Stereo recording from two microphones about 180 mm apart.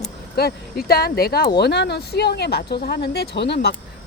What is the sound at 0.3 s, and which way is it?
Speech, 60° left (ahead or behind).